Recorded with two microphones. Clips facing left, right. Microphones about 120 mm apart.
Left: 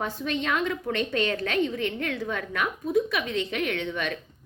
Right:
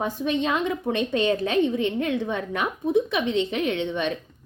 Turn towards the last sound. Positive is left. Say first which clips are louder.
# right 4 dB
turn(degrees=-20)  # may be behind; listen again after turning